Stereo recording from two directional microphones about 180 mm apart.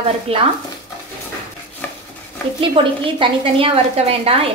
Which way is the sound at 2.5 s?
30° right (ahead or behind).